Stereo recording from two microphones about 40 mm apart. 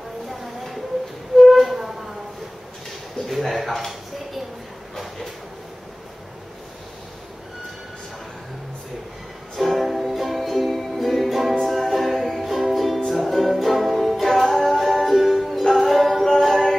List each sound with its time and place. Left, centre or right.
0.3 s music: centre
1.4 s flute: centre
3.3 s a sound: centre
9.6 s music: centre
15.7 s a capella: centre
16.3 s music: centre